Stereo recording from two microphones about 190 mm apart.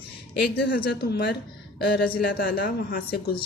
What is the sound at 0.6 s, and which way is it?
A man's voice, 55° left (ahead or behind).